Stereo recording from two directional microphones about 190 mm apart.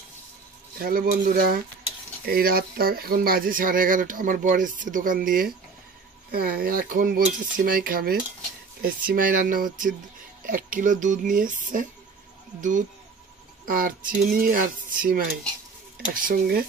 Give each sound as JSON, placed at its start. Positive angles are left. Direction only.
{"t": 0.7, "sound": "speech", "side_deg": -50}